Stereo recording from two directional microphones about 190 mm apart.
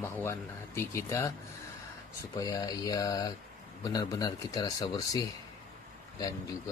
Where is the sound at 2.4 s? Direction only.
15° left (ahead or behind).